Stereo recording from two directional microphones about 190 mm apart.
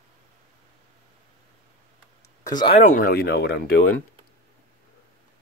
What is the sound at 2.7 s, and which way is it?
Speech, 40° left (ahead or behind).